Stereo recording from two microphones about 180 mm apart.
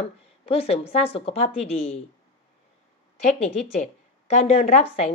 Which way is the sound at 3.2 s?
40° left (ahead or behind).